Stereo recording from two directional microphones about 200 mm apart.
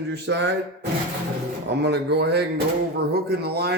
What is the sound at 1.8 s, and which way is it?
Speech, 55° right (ahead or behind).